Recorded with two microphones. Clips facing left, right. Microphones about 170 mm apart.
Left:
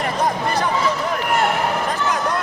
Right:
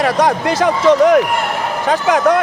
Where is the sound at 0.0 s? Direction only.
80° right.